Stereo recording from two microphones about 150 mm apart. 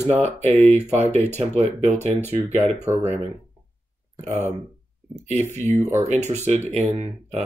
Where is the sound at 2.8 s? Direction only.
15° right (ahead or behind).